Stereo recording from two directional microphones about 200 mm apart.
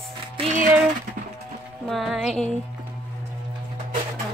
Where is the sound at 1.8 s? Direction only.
Centre (ahead or behind).